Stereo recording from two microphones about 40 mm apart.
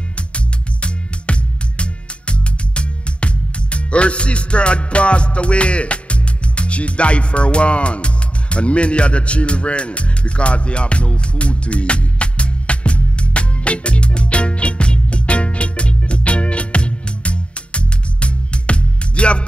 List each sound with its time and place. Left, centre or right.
0.8 s music: left